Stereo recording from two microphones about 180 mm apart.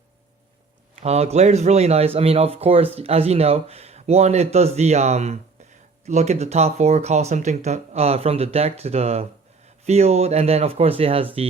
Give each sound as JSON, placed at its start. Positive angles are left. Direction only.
{"t": 0.9, "sound": "speech", "side_deg": -35}